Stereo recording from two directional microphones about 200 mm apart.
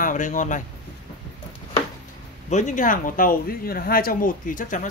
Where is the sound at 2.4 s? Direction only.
35° left (ahead or behind).